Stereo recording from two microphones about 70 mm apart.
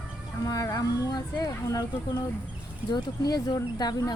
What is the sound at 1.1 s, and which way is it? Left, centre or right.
Speech, left.